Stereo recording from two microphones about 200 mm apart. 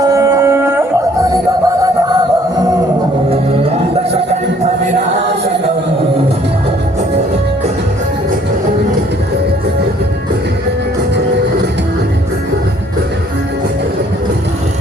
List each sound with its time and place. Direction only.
0.0 s music: 15° right (ahead or behind)
3.2 s music: 30° right (ahead or behind)